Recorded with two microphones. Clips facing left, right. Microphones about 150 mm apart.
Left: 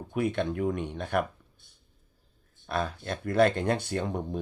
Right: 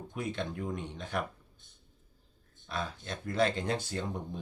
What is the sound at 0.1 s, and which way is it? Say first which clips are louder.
Speech: left 9 dB; 60° left (ahead or behind).